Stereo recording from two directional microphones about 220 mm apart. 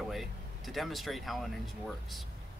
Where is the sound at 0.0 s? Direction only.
Centre (ahead or behind).